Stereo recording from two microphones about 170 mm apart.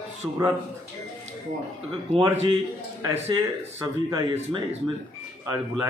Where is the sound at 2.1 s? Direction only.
35° right (ahead or behind).